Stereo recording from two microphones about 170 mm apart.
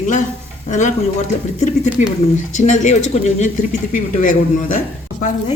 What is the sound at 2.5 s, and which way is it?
A man's voice, 45° left (ahead or behind).